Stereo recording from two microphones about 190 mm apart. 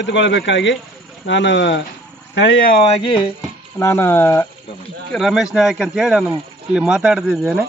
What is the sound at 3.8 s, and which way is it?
Speech, 15° left (ahead or behind).